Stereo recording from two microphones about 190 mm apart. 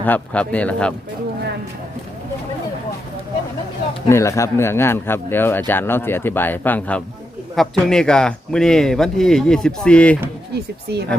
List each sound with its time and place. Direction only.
0.0 s a man's voice: 10° left (ahead or behind)
4.1 s a man's voice: 15° left (ahead or behind)
10.9 s speech: 60° right (ahead or behind)